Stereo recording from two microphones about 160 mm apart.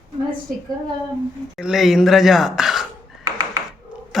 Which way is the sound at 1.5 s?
Centre (ahead or behind).